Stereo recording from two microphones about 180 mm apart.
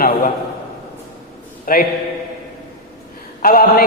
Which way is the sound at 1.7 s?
55° left (ahead or behind).